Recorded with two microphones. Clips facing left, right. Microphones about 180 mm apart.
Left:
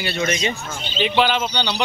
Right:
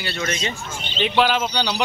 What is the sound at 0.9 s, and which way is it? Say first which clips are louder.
Speech: even; centre (ahead or behind).